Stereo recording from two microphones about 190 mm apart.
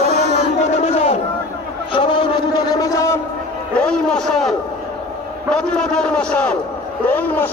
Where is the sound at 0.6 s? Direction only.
35° left (ahead or behind).